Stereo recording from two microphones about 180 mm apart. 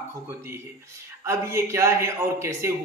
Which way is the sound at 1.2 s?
15° right (ahead or behind).